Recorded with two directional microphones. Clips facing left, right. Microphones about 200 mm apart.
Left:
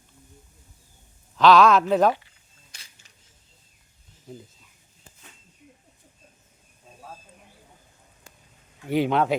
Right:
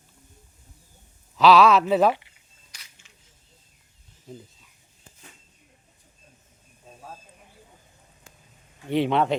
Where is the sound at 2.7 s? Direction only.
30° left (ahead or behind).